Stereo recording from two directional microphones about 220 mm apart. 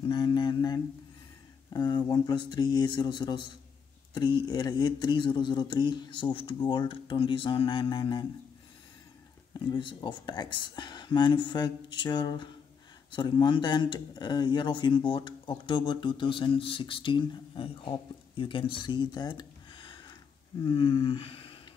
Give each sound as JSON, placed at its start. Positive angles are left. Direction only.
{"t": 0.1, "sound": "mantra", "side_deg": 20}
{"t": 1.7, "sound": "speech", "side_deg": 15}
{"t": 9.7, "sound": "speech", "side_deg": 20}